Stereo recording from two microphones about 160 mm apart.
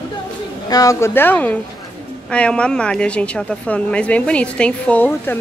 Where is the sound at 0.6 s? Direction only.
20° left (ahead or behind).